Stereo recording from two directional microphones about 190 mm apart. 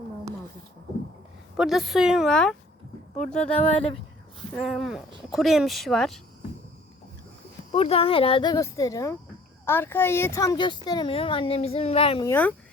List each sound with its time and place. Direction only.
1.5 s speech: centre (ahead or behind)
4.5 s speech: centre (ahead or behind)
7.7 s speech: 30° left (ahead or behind)
12.2 s speech: 10° left (ahead or behind)